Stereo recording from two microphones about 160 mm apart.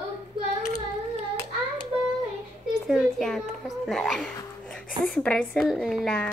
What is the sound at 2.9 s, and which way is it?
Speech, centre (ahead or behind).